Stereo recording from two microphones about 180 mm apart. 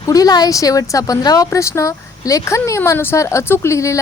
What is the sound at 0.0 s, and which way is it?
A woman's voice, 20° left (ahead or behind).